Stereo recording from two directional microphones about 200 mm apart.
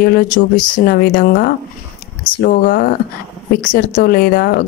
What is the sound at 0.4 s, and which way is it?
Speech, 40° left (ahead or behind).